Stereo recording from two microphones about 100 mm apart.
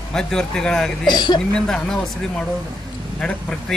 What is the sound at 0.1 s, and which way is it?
Speech, 5° left (ahead or behind).